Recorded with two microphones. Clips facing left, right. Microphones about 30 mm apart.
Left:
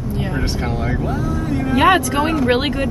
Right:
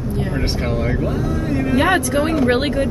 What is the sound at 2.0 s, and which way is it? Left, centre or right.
Speech, centre.